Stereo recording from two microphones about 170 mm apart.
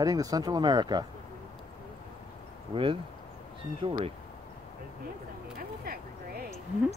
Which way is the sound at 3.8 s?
30° right (ahead or behind).